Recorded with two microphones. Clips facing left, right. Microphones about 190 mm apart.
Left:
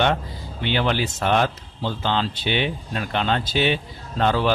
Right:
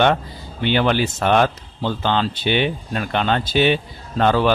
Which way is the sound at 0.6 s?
55° right (ahead or behind).